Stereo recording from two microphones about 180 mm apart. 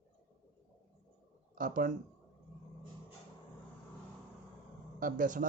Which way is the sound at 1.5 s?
50° right (ahead or behind).